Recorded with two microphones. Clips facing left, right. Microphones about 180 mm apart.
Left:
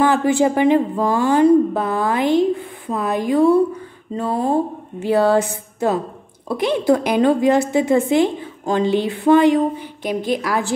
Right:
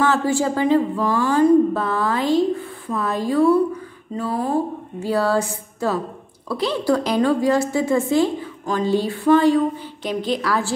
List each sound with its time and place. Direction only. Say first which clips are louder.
0.1 s a woman's voice: left 4 dB; 20° left (ahead or behind)